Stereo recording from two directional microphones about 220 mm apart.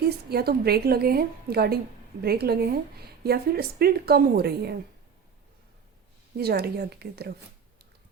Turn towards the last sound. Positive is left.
turn(degrees=-45)  # may be behind; listen again after turning